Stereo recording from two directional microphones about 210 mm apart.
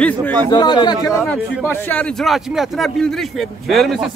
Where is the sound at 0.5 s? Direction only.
20° left (ahead or behind).